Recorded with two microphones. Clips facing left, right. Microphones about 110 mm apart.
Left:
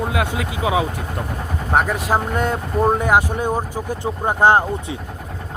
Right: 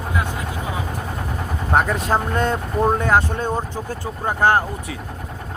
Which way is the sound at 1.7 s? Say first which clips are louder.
Even; 5° left (ahead or behind).